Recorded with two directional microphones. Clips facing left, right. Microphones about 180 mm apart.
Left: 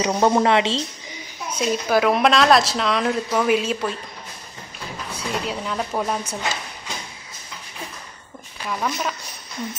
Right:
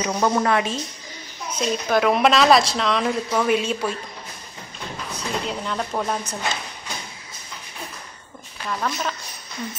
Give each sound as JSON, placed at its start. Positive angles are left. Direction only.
{"t": 0.0, "sound": "a woman's voice", "side_deg": 25}
{"t": 1.5, "sound": "speech", "side_deg": 5}
{"t": 5.1, "sound": "speech", "side_deg": 5}
{"t": 8.6, "sound": "a woman's voice", "side_deg": 10}